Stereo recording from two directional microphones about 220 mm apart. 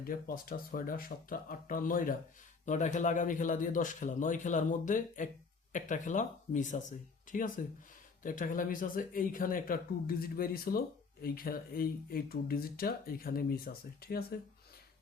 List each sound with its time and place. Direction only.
0.1 s speech: 40° left (ahead or behind)